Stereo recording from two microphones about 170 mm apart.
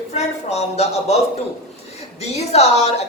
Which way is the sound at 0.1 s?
40° left (ahead or behind).